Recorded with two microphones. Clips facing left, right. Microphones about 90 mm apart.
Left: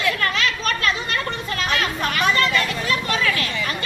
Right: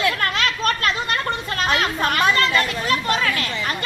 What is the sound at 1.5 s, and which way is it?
A woman's voice, 40° right (ahead or behind).